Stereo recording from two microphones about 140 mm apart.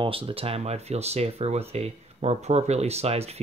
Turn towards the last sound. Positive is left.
turn(degrees=-45)  # may be behind; listen again after turning